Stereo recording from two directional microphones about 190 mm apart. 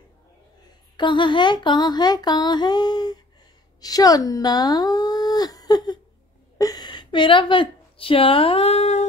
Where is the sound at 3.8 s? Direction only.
20° left (ahead or behind); by 9.0 s 35° left (ahead or behind).